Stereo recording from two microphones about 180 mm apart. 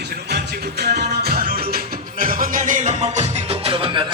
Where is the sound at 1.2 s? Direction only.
55° right (ahead or behind).